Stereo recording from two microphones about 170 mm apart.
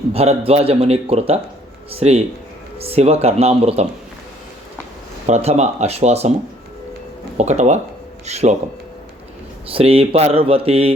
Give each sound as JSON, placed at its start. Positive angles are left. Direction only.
{"t": 0.1, "sound": "a man's voice", "side_deg": -35}
{"t": 5.2, "sound": "a man's voice", "side_deg": -40}
{"t": 7.3, "sound": "a man's voice", "side_deg": -40}
{"t": 9.6, "sound": "a man's voice", "side_deg": -35}